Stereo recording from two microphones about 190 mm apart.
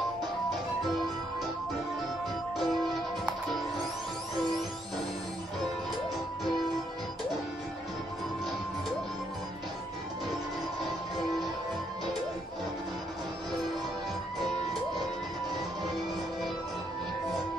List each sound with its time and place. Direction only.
2.6 s music: centre (ahead or behind)